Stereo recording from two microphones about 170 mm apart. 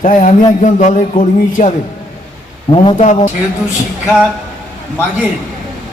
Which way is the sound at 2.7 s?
30° left (ahead or behind).